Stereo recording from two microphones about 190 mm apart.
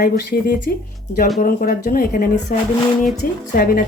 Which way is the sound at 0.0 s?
50° left (ahead or behind).